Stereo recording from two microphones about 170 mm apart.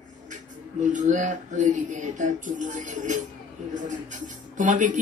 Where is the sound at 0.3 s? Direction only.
45° right (ahead or behind).